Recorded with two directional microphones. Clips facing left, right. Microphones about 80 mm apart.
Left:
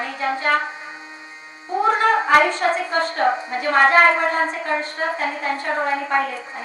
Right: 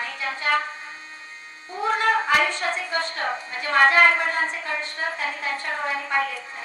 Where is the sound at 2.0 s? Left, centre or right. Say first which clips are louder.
Left 4 dB; left.